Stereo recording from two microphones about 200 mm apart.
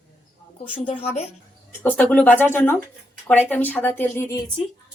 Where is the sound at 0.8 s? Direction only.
35° left (ahead or behind).